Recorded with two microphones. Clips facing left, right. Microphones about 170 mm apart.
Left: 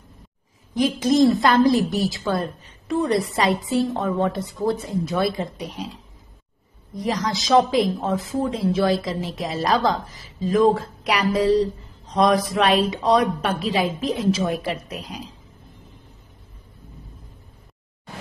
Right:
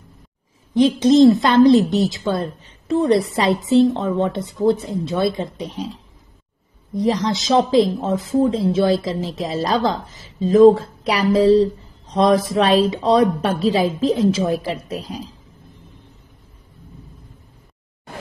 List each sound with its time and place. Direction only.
0.7 s a woman's voice: 25° right (ahead or behind)
7.0 s a woman's voice: 30° right (ahead or behind)